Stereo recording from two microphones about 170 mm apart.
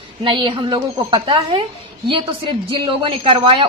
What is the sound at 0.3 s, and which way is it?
A woman's voice, 30° right (ahead or behind).